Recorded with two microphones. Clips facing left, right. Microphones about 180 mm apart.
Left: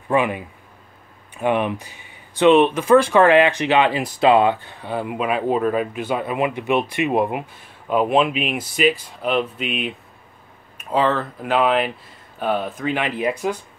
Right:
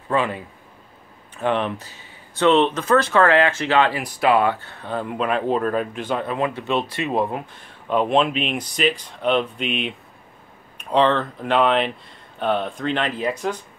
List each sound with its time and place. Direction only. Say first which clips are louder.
0.1 s speech: left 3 dB; 15° left (ahead or behind)